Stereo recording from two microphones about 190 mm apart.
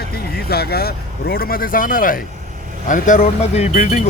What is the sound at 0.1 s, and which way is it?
Speech, 55° left (ahead or behind).